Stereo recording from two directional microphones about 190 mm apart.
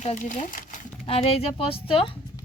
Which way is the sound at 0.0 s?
40° left (ahead or behind).